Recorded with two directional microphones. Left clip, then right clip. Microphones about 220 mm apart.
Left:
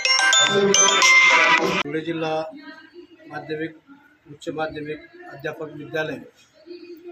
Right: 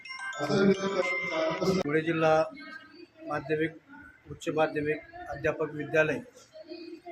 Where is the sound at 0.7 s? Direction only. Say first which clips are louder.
Left 16 dB; 40° left (ahead or behind).